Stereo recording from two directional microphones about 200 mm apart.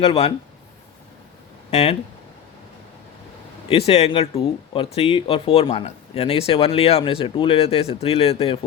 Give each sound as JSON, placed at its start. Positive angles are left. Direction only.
{"t": 0.0, "sound": "speech", "side_deg": 30}
{"t": 1.7, "sound": "speech", "side_deg": 30}
{"t": 3.7, "sound": "speech", "side_deg": 30}